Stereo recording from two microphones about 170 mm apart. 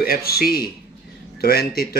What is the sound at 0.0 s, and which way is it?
Speech, 60° left (ahead or behind).